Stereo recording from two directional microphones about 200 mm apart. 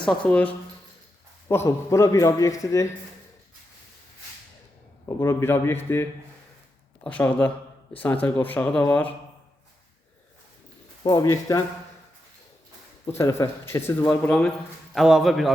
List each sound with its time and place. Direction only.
0.0 s a man's voice: 5° left (ahead or behind)
5.0 s a man's voice: 15° left (ahead or behind)
11.0 s a man's voice: 20° left (ahead or behind)
13.1 s a man's voice: 15° left (ahead or behind); by 15.5 s centre (ahead or behind)